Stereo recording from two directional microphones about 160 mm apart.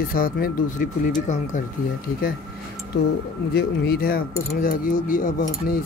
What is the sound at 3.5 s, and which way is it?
Speech, 75° left (ahead or behind).